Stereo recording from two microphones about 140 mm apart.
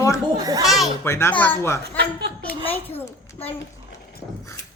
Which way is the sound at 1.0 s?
20° left (ahead or behind).